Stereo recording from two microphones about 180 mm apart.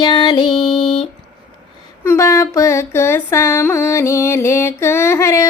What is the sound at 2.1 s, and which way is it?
Music, 15° left (ahead or behind).